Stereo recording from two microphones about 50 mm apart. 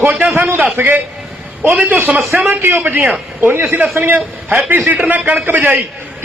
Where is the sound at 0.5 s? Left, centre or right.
Right.